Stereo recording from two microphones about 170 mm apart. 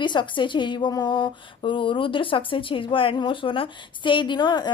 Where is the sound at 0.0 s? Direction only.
25° left (ahead or behind).